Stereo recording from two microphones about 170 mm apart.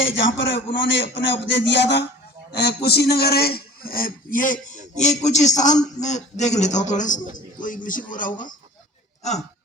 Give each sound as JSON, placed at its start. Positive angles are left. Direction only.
{"t": 0.0, "sound": "a man's voice", "side_deg": 90}
{"t": 2.5, "sound": "a man's voice", "side_deg": 70}
{"t": 7.3, "sound": "a sound", "side_deg": 50}